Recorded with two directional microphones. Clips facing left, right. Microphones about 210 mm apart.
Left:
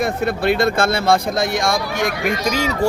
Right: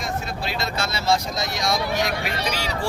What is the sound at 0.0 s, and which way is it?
Speech, 60° left (ahead or behind).